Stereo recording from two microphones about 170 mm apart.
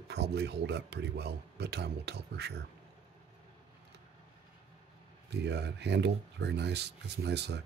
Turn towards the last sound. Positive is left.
turn(degrees=-80)